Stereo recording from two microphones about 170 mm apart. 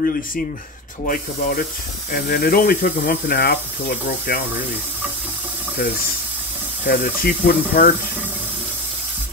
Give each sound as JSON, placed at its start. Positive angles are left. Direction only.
{"t": 1.0, "sound": "speech", "side_deg": 55}
{"t": 6.9, "sound": "speech", "side_deg": 65}